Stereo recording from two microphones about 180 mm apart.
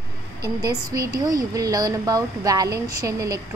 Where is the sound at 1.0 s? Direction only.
20° right (ahead or behind).